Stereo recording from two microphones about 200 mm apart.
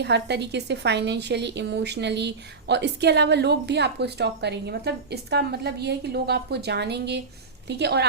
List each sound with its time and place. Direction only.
0.0 s a woman's voice: 55° right (ahead or behind)